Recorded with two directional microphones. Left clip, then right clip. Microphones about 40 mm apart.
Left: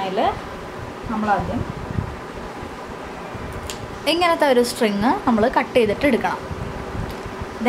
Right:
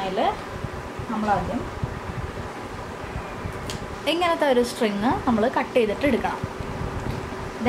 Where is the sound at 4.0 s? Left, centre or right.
Left.